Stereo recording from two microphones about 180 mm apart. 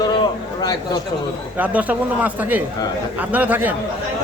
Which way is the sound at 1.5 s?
10° right (ahead or behind).